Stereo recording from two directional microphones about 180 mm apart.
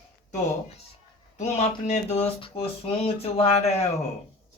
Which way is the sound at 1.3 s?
40° left (ahead or behind).